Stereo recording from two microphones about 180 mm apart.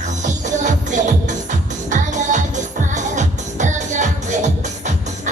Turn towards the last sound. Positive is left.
turn(degrees=-45)  # may be behind; listen again after turning